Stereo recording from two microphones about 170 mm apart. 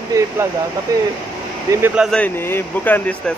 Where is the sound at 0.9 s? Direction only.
20° right (ahead or behind).